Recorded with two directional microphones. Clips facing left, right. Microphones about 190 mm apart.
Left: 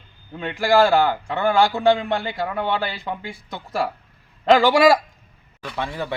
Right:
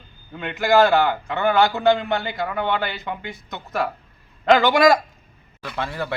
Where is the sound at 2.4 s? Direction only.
5° left (ahead or behind).